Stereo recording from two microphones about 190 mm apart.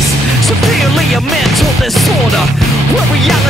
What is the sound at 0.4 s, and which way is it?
Music, centre (ahead or behind).